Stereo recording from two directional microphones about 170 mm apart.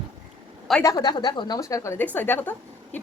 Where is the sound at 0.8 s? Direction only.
25° left (ahead or behind).